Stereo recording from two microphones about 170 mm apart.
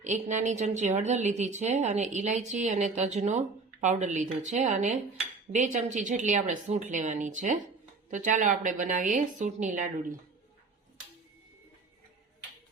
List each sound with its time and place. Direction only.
0.0 s speech: 45° right (ahead or behind)